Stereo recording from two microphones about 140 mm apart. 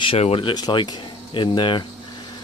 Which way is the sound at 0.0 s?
45° left (ahead or behind).